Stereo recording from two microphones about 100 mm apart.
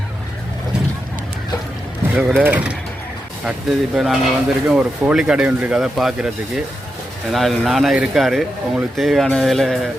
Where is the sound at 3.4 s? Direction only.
5° right (ahead or behind).